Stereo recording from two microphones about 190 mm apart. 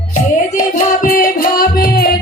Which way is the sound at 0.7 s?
45° left (ahead or behind).